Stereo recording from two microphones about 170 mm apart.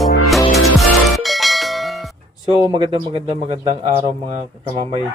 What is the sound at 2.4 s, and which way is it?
A man's voice, 25° right (ahead or behind).